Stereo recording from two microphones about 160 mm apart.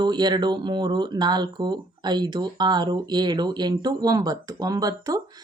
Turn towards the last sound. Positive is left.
turn(degrees=-20)  # may be behind; listen again after turning